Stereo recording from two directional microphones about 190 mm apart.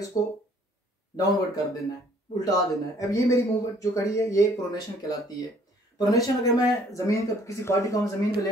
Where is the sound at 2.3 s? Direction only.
20° left (ahead or behind).